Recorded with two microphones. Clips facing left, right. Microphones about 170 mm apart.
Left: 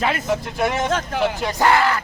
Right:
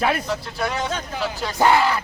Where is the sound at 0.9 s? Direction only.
80° left.